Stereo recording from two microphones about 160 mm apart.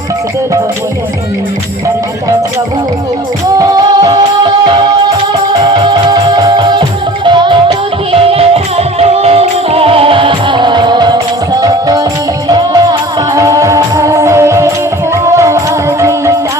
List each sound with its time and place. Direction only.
3.6 s music: 25° right (ahead or behind)